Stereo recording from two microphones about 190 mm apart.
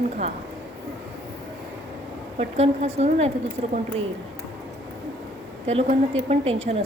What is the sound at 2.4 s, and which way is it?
Speech, 30° right (ahead or behind).